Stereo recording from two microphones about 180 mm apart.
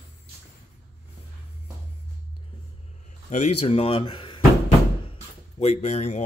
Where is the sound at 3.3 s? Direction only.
35° left (ahead or behind).